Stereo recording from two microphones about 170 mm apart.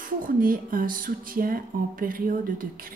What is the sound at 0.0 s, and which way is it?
Speech, 55° right (ahead or behind).